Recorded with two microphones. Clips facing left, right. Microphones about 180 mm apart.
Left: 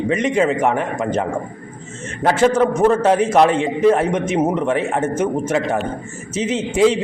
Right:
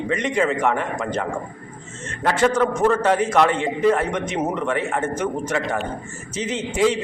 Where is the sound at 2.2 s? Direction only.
25° left (ahead or behind).